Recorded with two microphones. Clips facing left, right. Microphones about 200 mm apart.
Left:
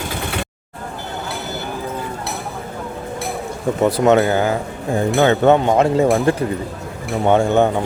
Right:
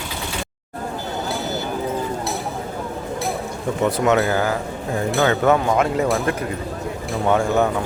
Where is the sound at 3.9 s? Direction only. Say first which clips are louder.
Left 4 dB; 35° left (ahead or behind).